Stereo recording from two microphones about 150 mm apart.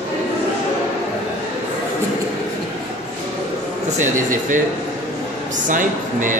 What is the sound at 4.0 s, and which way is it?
Speech, 60° right (ahead or behind).